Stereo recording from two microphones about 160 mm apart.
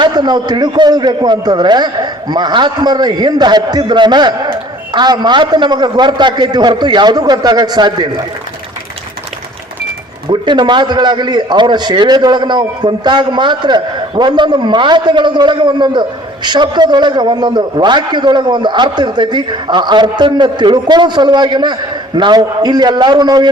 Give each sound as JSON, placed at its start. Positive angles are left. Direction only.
{"t": 0.0, "sound": "a man's voice", "side_deg": -25}
{"t": 10.2, "sound": "a man's voice", "side_deg": -30}